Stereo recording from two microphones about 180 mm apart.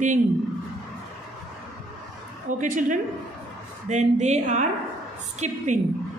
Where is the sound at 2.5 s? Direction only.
45° right (ahead or behind).